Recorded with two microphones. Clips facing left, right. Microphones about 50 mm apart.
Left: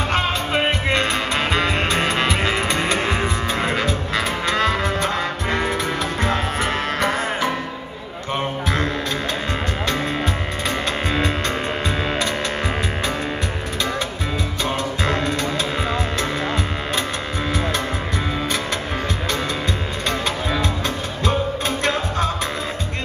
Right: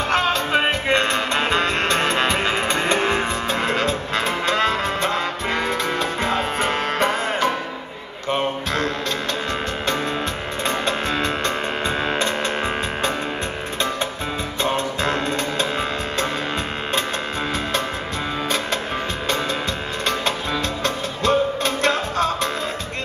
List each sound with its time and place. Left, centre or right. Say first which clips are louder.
0.1 s music: right 4 dB; centre
1.6 s music: even; centre
4.2 s music: even; right
10.9 s music: even; centre
14.8 s music: even; right
21.3 s music: right 3 dB; centre